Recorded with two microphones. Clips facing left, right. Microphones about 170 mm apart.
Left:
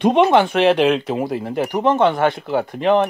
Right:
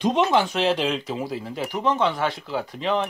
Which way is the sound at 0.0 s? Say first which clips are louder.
Left 6 dB; 60° left (ahead or behind).